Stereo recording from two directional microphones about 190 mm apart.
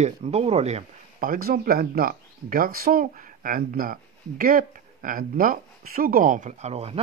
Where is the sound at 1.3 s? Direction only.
50° right (ahead or behind); by 7.0 s 30° right (ahead or behind).